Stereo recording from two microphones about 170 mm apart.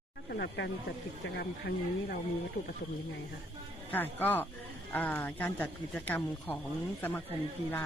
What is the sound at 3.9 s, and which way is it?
Speech, 10° left (ahead or behind).